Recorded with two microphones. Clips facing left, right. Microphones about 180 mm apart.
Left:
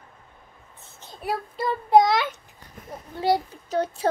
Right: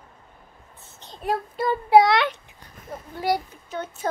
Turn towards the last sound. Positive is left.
turn(degrees=35)  # may be behind; listen again after turning